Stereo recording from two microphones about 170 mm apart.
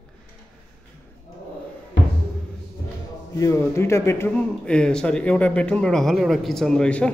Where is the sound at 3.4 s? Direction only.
15° left (ahead or behind).